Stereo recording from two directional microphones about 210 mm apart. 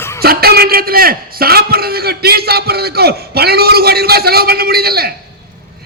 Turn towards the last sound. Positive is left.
turn(degrees=-45)  # may be behind; listen again after turning